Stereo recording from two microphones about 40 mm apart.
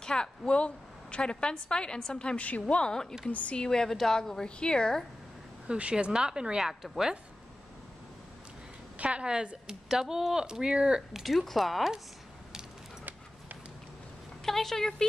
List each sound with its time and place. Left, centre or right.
0.0 s a woman's voice: centre
2.3 s a woman's voice: left
2.7 s a woman's voice: centre
3.3 s a woman's voice: left
3.5 s a woman's voice: centre
5.7 s speech: right
6.1 s speech: centre
6.7 s speech: centre
8.9 s speech: right
11.0 s speech: centre
14.4 s a woman's voice: centre